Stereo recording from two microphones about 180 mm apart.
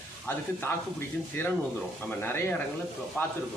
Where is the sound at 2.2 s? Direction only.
10° left (ahead or behind).